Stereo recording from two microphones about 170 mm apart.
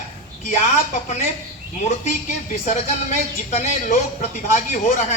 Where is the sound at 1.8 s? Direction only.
45° left (ahead or behind).